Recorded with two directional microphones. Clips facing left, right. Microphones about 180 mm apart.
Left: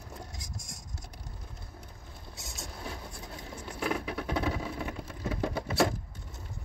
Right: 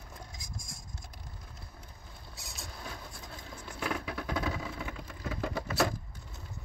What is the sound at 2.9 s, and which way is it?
Vehicle, 30° left (ahead or behind).